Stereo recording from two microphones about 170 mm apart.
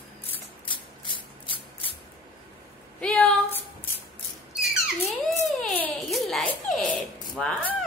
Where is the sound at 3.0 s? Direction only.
5° left (ahead or behind).